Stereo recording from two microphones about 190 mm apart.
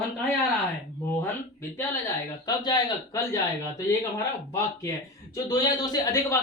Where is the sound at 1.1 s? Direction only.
15° left (ahead or behind).